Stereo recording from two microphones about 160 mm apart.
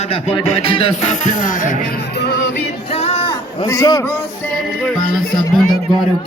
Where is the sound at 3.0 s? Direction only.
40° left (ahead or behind).